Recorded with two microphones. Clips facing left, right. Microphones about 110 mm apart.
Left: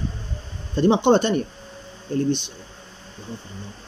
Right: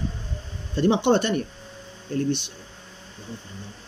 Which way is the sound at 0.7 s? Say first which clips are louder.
Left 3 dB; 25° left (ahead or behind).